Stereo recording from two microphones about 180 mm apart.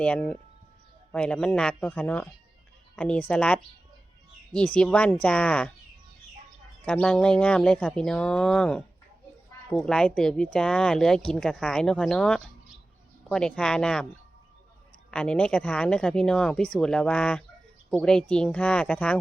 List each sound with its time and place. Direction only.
0.0 s speech: 5° left (ahead or behind)
6.8 s speech: 5° left (ahead or behind)
15.1 s speech: 5° left (ahead or behind)